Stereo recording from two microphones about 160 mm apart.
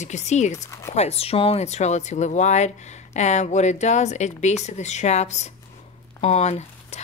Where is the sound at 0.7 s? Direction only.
15° left (ahead or behind).